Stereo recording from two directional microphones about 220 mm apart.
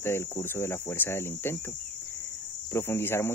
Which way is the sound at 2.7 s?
10° left (ahead or behind).